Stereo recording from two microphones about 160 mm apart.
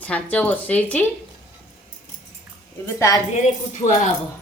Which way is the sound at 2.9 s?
20° left (ahead or behind).